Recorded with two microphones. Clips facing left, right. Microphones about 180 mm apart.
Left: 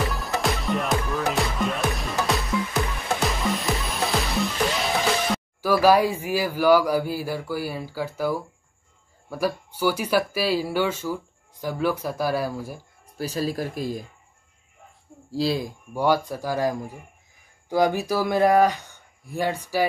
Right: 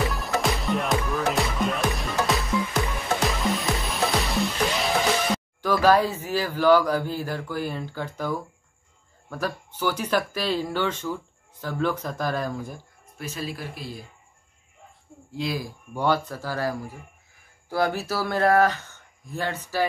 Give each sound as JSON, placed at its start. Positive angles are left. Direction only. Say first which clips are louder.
{"t": 0.0, "sound": "music", "louder": "even", "side_deg": 0}
{"t": 9.3, "sound": "speech", "louder": "left 4 dB", "side_deg": 10}
{"t": 13.2, "sound": "speech", "louder": "left 7 dB", "side_deg": 35}
{"t": 15.3, "sound": "speech", "louder": "left 5 dB", "side_deg": 30}
{"t": 15.9, "sound": "speech", "louder": "left 2 dB", "side_deg": 10}